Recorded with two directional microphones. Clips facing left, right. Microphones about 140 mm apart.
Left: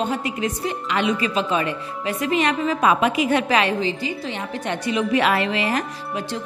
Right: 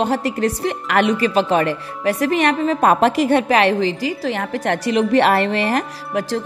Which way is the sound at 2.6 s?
50° right (ahead or behind).